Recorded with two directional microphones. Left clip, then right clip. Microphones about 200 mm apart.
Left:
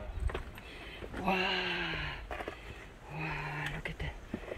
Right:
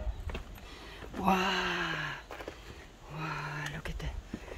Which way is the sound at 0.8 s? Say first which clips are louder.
Right 4 dB; 35° right (ahead or behind).